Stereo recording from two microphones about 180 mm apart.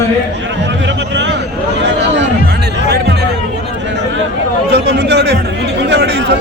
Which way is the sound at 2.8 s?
65° right (ahead or behind).